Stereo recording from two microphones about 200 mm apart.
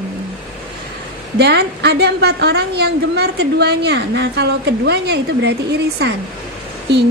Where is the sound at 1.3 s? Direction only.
55° right (ahead or behind).